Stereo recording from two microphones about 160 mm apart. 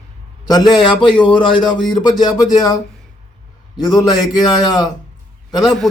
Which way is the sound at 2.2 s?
25° left (ahead or behind).